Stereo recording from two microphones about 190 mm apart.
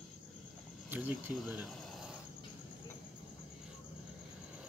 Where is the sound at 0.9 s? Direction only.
5° right (ahead or behind).